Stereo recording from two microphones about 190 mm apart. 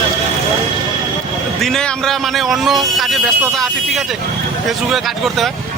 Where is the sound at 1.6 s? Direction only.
5° left (ahead or behind).